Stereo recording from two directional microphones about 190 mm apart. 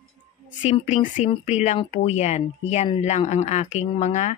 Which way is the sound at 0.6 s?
40° left (ahead or behind).